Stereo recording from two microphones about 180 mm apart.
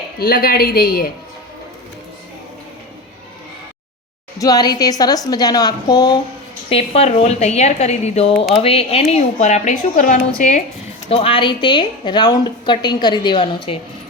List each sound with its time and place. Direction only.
0.2 s a woman's voice: 55° left (ahead or behind)
4.4 s a woman's voice: 20° left (ahead or behind)
6.7 s a woman's voice: 35° left (ahead or behind)
11.1 s a woman's voice: 30° left (ahead or behind)